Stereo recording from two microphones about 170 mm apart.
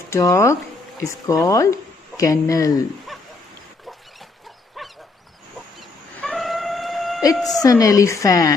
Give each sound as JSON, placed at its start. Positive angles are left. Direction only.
{"t": 0.1, "sound": "speech", "side_deg": 20}
{"t": 4.8, "sound": "dog", "side_deg": 0}
{"t": 5.8, "sound": "shofar", "side_deg": 0}
{"t": 7.3, "sound": "a woman's voice", "side_deg": 5}
{"t": 7.6, "sound": "speech", "side_deg": 20}